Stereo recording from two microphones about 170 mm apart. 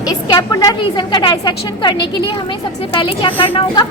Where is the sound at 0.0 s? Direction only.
20° left (ahead or behind).